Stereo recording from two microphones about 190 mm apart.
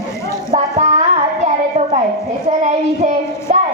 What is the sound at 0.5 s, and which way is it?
Child singing, 35° right (ahead or behind).